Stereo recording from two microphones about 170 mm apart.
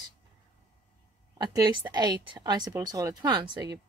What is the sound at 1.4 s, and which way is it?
A woman's voice, 25° right (ahead or behind).